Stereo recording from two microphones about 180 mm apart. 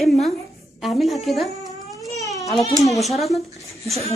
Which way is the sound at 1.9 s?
20° left (ahead or behind).